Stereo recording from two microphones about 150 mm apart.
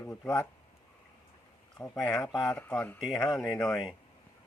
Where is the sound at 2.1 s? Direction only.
25° left (ahead or behind).